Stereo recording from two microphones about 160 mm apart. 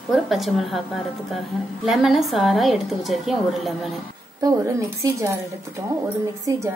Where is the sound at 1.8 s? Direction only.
Centre (ahead or behind).